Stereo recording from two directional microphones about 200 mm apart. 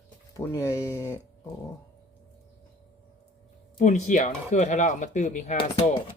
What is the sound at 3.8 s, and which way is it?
Speech, 35° left (ahead or behind).